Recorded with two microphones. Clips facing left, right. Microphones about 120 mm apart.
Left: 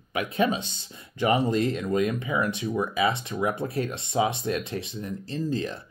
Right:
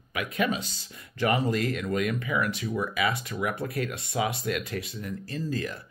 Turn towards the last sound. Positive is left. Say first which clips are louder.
# left 3 dB
turn(degrees=25)  # may be behind; listen again after turning